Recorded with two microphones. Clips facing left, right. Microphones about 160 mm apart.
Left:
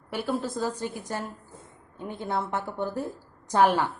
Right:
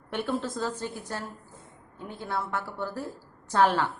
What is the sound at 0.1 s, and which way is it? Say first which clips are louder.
A woman's voice: left 1 dB; 10° left (ahead or behind).